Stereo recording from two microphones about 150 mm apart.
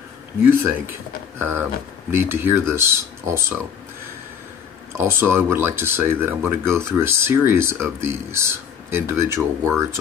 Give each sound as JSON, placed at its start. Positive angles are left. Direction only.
{"t": 0.5, "sound": "speech", "side_deg": -15}
{"t": 4.9, "sound": "speech", "side_deg": -15}